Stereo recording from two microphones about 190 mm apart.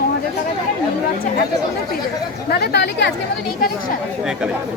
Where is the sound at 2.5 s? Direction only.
55° left (ahead or behind).